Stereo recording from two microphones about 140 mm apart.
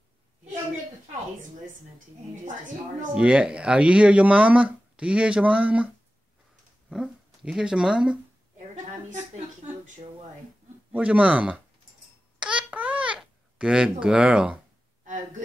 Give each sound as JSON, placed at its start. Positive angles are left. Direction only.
{"t": 3.2, "sound": "speech", "side_deg": -5}
{"t": 6.9, "sound": "speech", "side_deg": -5}
{"t": 9.1, "sound": "speech", "side_deg": -55}
{"t": 10.9, "sound": "speech", "side_deg": -10}
{"t": 12.4, "sound": "babbling", "side_deg": -10}